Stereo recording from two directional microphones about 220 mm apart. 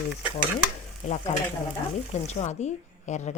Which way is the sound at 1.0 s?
30° left (ahead or behind).